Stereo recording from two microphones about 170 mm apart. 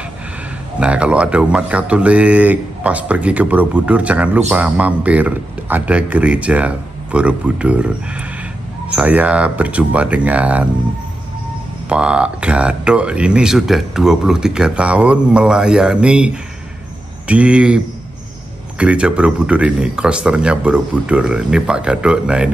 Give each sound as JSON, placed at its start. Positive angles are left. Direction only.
{"t": 0.7, "sound": "speech", "side_deg": -5}
{"t": 11.9, "sound": "speech", "side_deg": -5}